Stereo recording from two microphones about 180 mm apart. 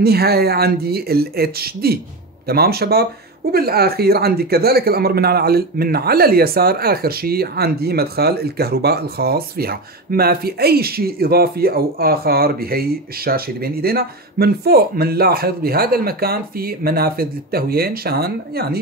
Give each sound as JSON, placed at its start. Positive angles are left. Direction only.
{"t": 0.0, "sound": "speech", "side_deg": -60}